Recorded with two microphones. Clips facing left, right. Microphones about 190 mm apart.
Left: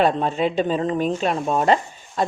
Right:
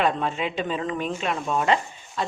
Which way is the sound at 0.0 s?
35° left (ahead or behind).